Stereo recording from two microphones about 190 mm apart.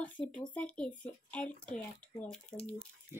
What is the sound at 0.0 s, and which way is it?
Speech, 5° left (ahead or behind).